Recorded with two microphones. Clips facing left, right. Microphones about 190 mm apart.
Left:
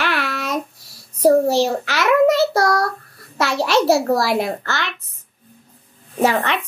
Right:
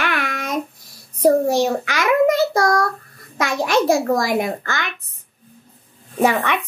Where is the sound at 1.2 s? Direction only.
15° right (ahead or behind).